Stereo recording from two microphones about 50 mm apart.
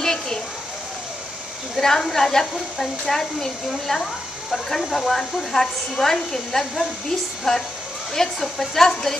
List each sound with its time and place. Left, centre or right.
0.0 s a sound: centre
1.8 s speech: centre
6.6 s hair dryer: centre
7.5 s speech: centre